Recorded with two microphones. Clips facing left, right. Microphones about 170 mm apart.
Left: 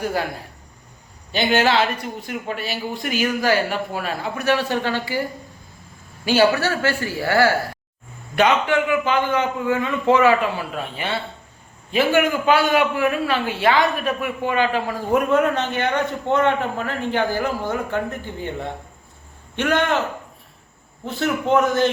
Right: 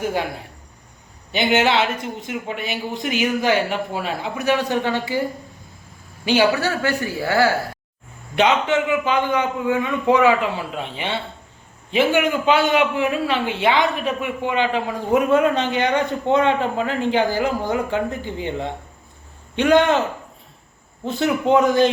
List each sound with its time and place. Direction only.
1.3 s a man's voice: 20° right (ahead or behind)
6.2 s a man's voice: 15° right (ahead or behind)
19.5 s a man's voice: 15° right (ahead or behind)
21.0 s a man's voice: 15° right (ahead or behind)